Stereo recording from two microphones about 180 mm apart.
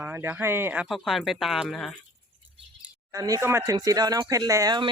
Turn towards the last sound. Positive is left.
turn(degrees=-20)  # may be behind; listen again after turning